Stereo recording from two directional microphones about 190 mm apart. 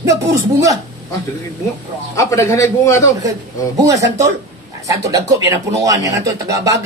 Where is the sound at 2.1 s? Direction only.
15° left (ahead or behind).